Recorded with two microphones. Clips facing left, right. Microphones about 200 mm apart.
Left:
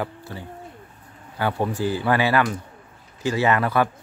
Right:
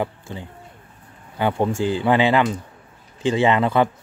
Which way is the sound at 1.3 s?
20° right (ahead or behind).